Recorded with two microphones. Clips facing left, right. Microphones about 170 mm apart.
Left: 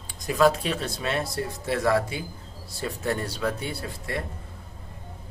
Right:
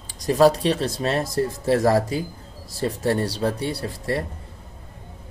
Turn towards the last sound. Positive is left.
turn(degrees=-35)  # may be behind; listen again after turning